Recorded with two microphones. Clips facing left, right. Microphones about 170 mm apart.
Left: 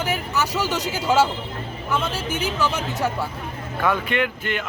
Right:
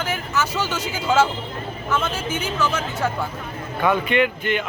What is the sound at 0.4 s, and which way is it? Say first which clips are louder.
Speech: left 1 dB; 35° left (ahead or behind).